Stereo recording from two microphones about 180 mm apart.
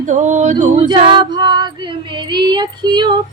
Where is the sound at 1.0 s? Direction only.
25° right (ahead or behind).